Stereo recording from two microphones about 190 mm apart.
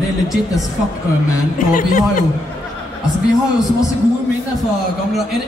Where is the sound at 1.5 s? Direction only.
45° left (ahead or behind).